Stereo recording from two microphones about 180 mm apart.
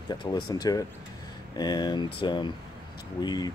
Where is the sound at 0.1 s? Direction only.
25° left (ahead or behind).